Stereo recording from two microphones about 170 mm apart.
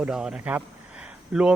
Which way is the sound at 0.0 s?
5° right (ahead or behind).